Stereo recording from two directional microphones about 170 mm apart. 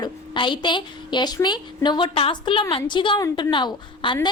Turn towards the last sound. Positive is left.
turn(degrees=25)  # may be behind; listen again after turning